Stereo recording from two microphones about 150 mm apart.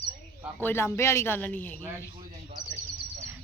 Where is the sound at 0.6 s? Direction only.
15° left (ahead or behind).